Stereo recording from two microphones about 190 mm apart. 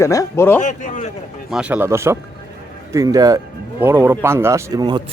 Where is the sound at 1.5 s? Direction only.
5° right (ahead or behind).